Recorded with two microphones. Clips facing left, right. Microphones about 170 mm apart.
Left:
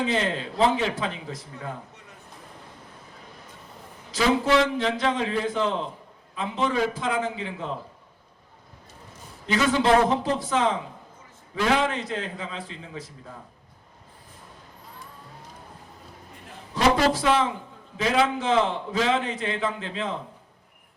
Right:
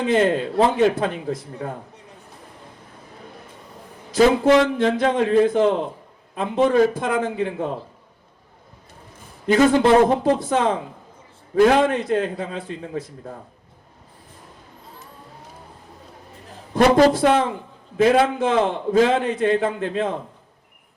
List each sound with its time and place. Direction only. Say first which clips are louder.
0.0 s a man's voice: right 7 dB; 55° right (ahead or behind)
4.1 s a man's voice: right 7 dB; 50° right (ahead or behind)
9.5 s a man's voice: right 6 dB; 50° right (ahead or behind)
16.7 s a man's voice: right 7 dB; 55° right (ahead or behind)